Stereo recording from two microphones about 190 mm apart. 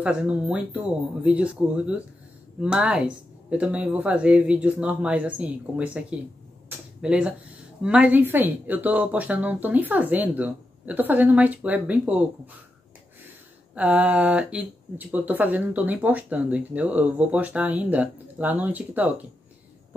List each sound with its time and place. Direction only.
0.0 s speech: 5° right (ahead or behind)
13.7 s speech: 5° right (ahead or behind)